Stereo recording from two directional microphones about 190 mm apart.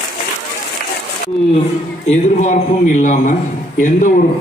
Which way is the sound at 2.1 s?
40° left (ahead or behind).